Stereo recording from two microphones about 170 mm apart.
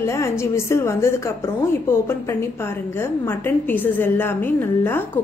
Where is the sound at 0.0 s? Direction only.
15° left (ahead or behind).